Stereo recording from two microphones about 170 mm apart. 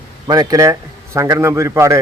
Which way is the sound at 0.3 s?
20° right (ahead or behind).